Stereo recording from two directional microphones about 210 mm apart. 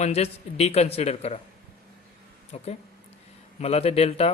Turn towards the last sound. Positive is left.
turn(degrees=30)  # may be behind; listen again after turning